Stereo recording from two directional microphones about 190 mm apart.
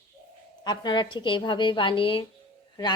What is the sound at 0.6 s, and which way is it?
A woman's voice, 25° left (ahead or behind).